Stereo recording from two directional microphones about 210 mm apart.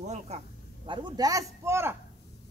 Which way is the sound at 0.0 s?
35° right (ahead or behind).